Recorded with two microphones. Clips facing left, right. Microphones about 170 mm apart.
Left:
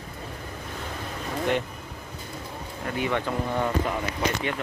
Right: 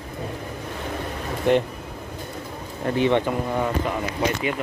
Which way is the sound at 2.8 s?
30° right (ahead or behind).